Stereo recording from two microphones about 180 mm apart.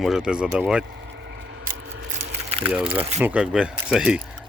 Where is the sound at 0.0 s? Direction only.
5° right (ahead or behind).